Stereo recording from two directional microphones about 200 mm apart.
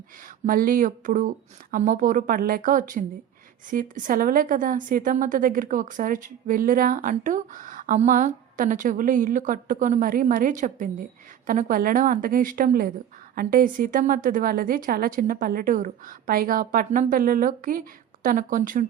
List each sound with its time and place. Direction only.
0.4 s a woman's voice: 45° right (ahead or behind)